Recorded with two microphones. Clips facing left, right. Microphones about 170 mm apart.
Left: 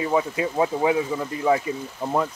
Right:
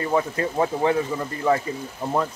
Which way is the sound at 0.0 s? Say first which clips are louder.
Even; 5° left (ahead or behind).